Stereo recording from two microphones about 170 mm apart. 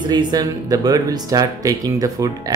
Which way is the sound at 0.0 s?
25° right (ahead or behind).